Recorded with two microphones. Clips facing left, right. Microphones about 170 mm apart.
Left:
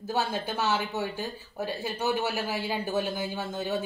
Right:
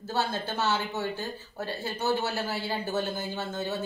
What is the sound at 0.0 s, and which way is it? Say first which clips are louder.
Speech: left 1 dB; 10° left (ahead or behind).